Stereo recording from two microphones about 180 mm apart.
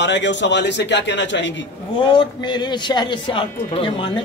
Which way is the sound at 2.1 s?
25° left (ahead or behind).